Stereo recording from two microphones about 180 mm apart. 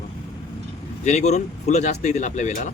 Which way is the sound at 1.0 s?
40° left (ahead or behind).